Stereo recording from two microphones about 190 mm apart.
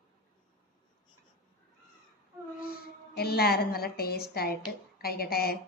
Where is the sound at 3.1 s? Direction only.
55° left (ahead or behind).